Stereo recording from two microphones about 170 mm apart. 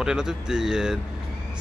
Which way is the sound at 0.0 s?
5° right (ahead or behind).